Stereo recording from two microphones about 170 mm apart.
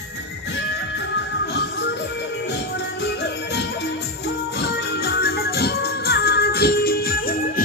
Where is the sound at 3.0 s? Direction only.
80° left.